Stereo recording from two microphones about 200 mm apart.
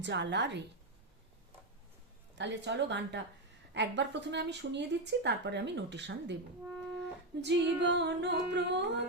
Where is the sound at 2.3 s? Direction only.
60° right (ahead or behind).